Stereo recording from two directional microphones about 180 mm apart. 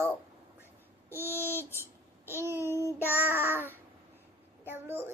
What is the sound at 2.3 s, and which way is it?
Babbling, 10° right (ahead or behind).